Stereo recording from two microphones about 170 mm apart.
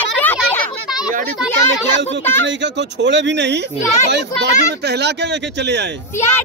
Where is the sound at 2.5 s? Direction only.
90° right.